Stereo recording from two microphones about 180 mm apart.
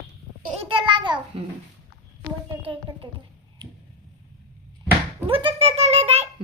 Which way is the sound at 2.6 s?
30° right (ahead or behind).